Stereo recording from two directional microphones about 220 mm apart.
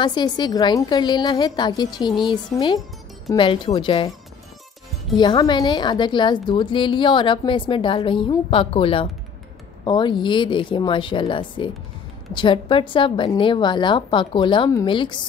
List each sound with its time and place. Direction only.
0.0 s a woman's voice: 20° left (ahead or behind)
5.1 s a woman's voice: 20° left (ahead or behind)